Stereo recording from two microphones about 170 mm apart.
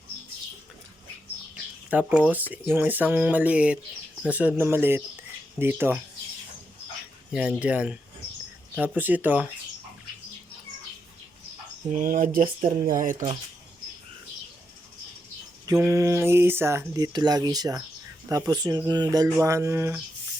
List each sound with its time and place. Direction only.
1.5 s a sound: 10° right (ahead or behind)
2.5 s speech: 10° right (ahead or behind)
7.3 s speech: 10° right (ahead or behind)
11.9 s speech: 50° right (ahead or behind)
15.6 s speech: 20° right (ahead or behind)